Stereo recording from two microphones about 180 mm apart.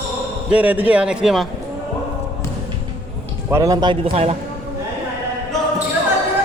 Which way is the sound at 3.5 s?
20° right (ahead or behind).